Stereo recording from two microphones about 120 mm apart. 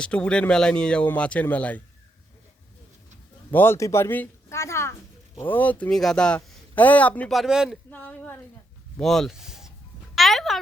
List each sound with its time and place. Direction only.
0.0 s speech: 10° left (ahead or behind)
3.5 s a woman's voice: 20° left (ahead or behind)
7.3 s speech: centre (ahead or behind)
7.9 s speech: 10° left (ahead or behind)
9.0 s a sound: 5° left (ahead or behind)